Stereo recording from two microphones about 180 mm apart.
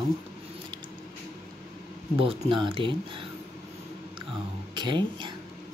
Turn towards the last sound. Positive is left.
turn(degrees=-25)  # may be behind; listen again after turning